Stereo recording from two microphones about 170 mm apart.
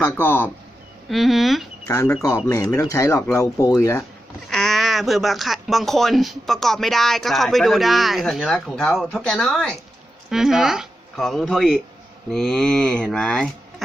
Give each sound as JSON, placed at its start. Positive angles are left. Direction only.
{"t": 0.0, "sound": "a man's voice", "side_deg": 10}
{"t": 1.0, "sound": "speech", "side_deg": 0}
{"t": 1.9, "sound": "a man's voice", "side_deg": 15}
{"t": 4.5, "sound": "speech", "side_deg": 5}